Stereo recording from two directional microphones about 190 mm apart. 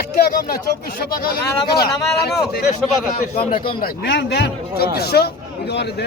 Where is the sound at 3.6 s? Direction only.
60° left (ahead or behind).